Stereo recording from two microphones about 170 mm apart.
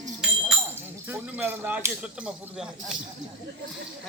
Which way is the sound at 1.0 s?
10° right (ahead or behind).